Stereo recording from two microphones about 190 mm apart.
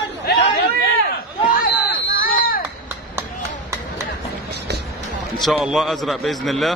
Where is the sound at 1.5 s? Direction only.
50° left (ahead or behind).